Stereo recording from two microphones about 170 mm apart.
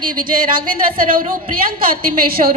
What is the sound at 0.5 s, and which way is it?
A woman's voice, 55° right (ahead or behind).